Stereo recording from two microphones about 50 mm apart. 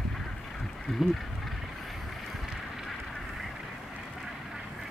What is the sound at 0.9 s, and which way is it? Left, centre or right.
Duck, centre.